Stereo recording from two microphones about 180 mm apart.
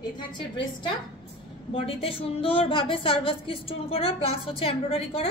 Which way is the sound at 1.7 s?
30° left (ahead or behind).